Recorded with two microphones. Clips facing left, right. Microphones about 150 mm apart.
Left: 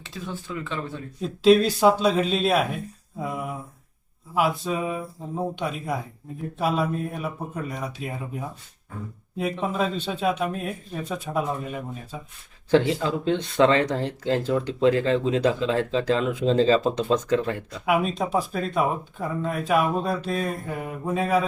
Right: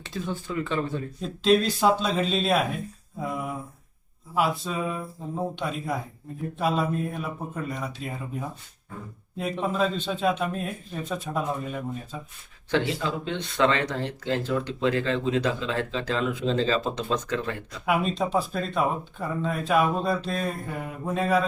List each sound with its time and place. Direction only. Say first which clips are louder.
0.0 s speech: right 3 dB; centre (ahead or behind)
4.4 s speech: left 2 dB; 10° left (ahead or behind)
12.7 s speech: left 5 dB; 40° left (ahead or behind)
17.8 s speech: left 2 dB; 10° left (ahead or behind)